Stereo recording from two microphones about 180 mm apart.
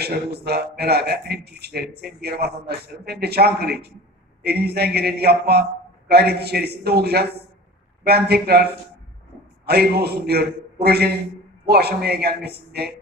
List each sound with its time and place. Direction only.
0.0 s a man's voice: 65° right (ahead or behind)
9.7 s a man's voice: 60° right (ahead or behind)